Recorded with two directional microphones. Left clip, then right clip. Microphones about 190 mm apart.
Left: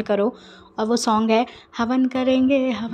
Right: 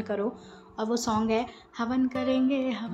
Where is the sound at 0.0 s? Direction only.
45° left (ahead or behind).